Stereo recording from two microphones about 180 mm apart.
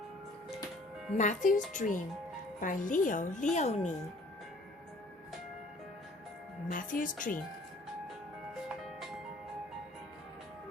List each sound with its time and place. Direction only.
1.1 s a woman's voice: 40° left (ahead or behind)
6.7 s a woman's voice: 50° left (ahead or behind)